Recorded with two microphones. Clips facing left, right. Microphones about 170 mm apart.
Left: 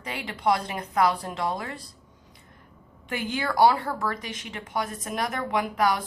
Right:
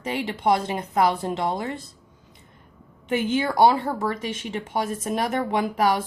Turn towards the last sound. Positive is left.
turn(degrees=-25)  # may be behind; listen again after turning